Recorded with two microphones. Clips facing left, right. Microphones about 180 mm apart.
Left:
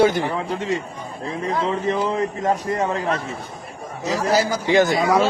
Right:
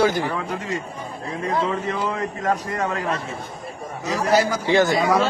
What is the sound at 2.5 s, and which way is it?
Speech, 25° left (ahead or behind).